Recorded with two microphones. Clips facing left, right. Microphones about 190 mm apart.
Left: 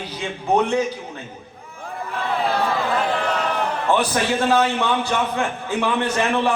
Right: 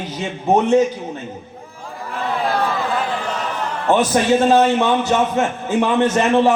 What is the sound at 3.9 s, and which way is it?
A woman's voice, 20° right (ahead or behind).